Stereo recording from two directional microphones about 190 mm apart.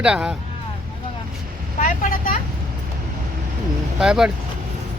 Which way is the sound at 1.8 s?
45° left (ahead or behind).